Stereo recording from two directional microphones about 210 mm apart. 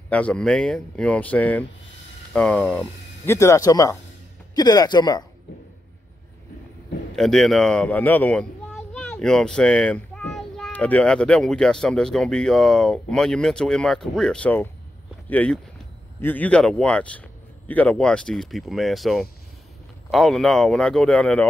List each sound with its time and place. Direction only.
0.1 s speech: 5° left (ahead or behind)
7.2 s speech: centre (ahead or behind)